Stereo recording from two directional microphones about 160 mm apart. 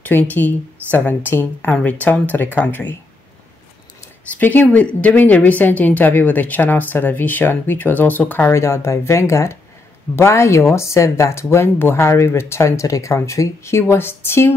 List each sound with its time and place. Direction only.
0.0 s speech: 10° left (ahead or behind)
4.4 s speech: 10° left (ahead or behind)